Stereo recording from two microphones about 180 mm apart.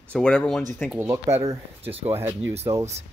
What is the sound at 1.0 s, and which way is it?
Speech, 15° right (ahead or behind).